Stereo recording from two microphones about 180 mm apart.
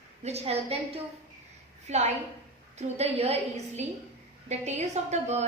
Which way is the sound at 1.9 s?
40° right (ahead or behind).